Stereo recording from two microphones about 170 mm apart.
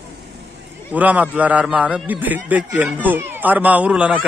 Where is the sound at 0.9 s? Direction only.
10° right (ahead or behind).